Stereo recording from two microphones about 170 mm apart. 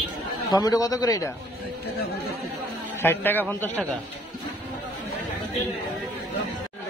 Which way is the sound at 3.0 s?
10° left (ahead or behind).